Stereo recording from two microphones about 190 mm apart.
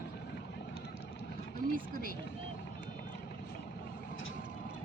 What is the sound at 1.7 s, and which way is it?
Vehicle, 50° right (ahead or behind).